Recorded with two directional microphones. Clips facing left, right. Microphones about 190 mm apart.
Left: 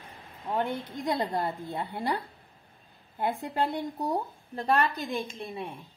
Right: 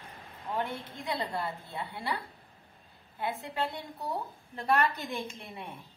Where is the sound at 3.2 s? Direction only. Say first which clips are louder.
Left 5 dB; 40° left (ahead or behind).